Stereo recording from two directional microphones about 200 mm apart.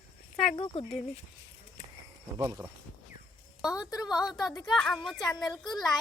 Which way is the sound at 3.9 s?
20° left (ahead or behind).